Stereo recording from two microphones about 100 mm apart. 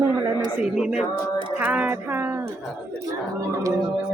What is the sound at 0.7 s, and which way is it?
Choir, 5° right (ahead or behind).